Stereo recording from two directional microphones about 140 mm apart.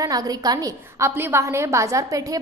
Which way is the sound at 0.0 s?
25° right (ahead or behind).